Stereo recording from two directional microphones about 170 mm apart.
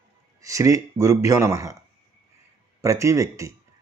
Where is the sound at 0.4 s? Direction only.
20° right (ahead or behind).